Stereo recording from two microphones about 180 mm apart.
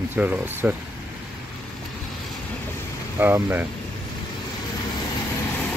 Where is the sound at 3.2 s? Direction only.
10° right (ahead or behind).